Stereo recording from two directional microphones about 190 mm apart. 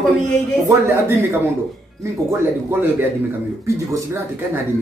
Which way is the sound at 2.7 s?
10° right (ahead or behind).